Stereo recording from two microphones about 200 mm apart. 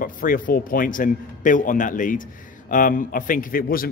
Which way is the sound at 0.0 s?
45° left (ahead or behind).